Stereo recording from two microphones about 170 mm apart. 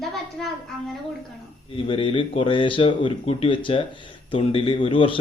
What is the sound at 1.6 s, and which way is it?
Speech, 30° left (ahead or behind).